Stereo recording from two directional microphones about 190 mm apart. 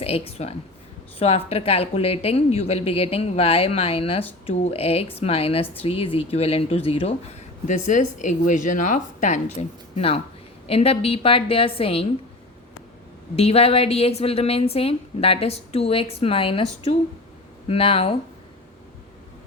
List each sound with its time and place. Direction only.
0.0 s a woman's voice: 30° left (ahead or behind)
13.3 s a woman's voice: 30° left (ahead or behind)
17.7 s a woman's voice: 30° left (ahead or behind)